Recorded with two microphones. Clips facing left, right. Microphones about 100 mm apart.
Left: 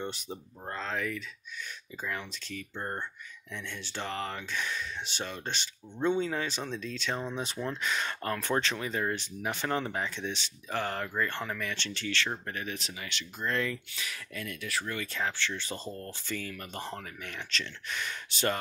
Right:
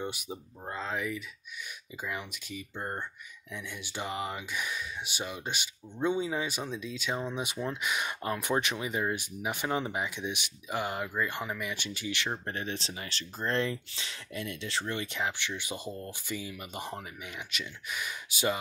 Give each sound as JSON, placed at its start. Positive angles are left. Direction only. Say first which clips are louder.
{"t": 0.0, "sound": "speech", "louder": "even", "side_deg": -10}
{"t": 12.4, "sound": "speech", "louder": "right 2 dB", "side_deg": -30}